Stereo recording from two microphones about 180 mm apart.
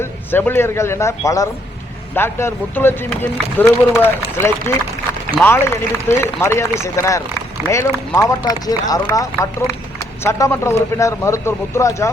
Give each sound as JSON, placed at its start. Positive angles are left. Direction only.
{"t": 0.0, "sound": "speech", "side_deg": 10}
{"t": 5.4, "sound": "speech", "side_deg": 15}